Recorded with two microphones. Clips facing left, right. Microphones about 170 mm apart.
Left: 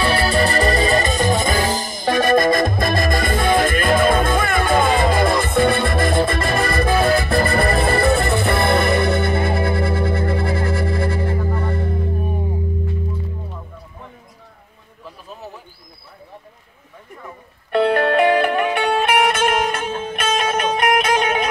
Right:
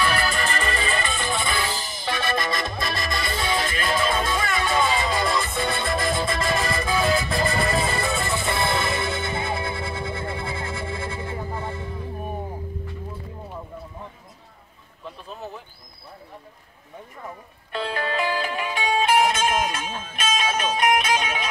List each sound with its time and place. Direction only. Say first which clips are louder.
0.0 s music: left 6 dB; 30° left (ahead or behind); by 12.1 s 65° left (ahead or behind)
17.6 s music: left 11 dB; 65° left (ahead or behind)